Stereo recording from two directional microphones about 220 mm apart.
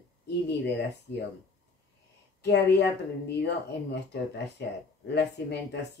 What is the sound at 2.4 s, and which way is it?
Speech, 50° left (ahead or behind).